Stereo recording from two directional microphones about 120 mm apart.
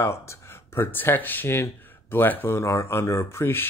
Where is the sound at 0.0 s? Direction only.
20° left (ahead or behind).